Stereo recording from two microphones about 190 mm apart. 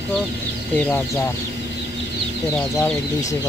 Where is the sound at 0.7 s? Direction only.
5° left (ahead or behind).